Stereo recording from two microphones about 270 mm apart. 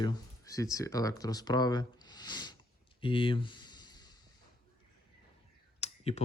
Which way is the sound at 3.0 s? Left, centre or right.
Centre.